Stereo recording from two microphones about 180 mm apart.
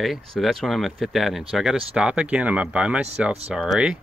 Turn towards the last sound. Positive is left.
turn(degrees=-5)  # may be behind; listen again after turning